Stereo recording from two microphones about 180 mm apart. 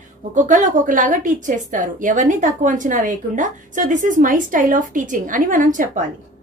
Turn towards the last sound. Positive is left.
turn(degrees=-45)  # may be behind; listen again after turning